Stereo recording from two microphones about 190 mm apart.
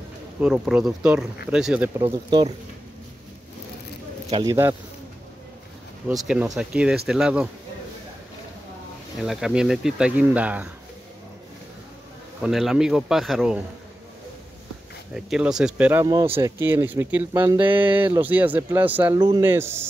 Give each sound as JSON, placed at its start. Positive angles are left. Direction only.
{"t": 0.4, "sound": "speech", "side_deg": -5}
{"t": 2.0, "sound": "speech", "side_deg": -30}
{"t": 4.5, "sound": "speech", "side_deg": -15}
{"t": 6.0, "sound": "speech", "side_deg": -5}
{"t": 9.2, "sound": "speech", "side_deg": 0}
{"t": 12.4, "sound": "speech", "side_deg": 0}
{"t": 15.1, "sound": "speech", "side_deg": -5}